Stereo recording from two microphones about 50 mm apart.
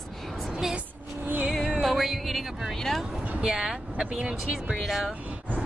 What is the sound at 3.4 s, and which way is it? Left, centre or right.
Speech, centre.